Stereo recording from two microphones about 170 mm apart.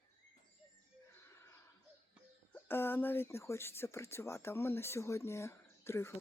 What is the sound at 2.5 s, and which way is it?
Speech, 15° left (ahead or behind).